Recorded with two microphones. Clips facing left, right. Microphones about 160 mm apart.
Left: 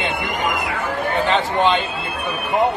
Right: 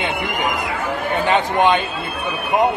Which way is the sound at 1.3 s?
15° right (ahead or behind).